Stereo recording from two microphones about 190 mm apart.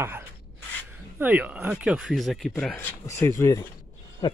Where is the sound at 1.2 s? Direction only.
10° right (ahead or behind); by 4.4 s 20° left (ahead or behind).